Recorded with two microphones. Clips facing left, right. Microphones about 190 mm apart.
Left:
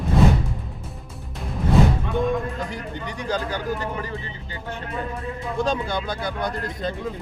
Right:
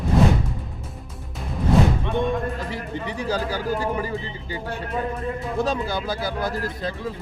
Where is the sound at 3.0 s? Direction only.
30° right (ahead or behind).